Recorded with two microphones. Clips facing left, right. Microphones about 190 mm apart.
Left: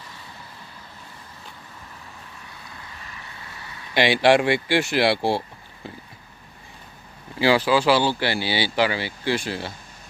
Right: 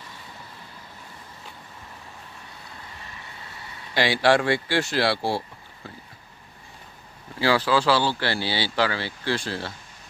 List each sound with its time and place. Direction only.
3.9 s speech: 20° left (ahead or behind)
7.3 s speech: 15° left (ahead or behind)